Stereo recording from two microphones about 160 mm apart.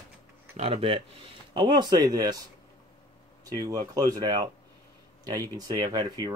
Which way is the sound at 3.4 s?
25° right (ahead or behind).